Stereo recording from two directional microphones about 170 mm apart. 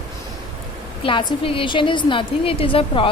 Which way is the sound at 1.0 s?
30° left (ahead or behind).